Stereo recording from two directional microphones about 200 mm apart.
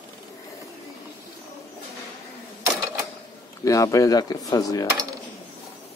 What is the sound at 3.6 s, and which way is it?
Speech, 15° left (ahead or behind).